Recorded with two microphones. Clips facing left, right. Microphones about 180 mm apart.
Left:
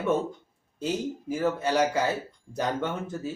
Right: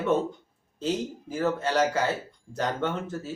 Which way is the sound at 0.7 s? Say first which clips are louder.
Even; 10° left (ahead or behind).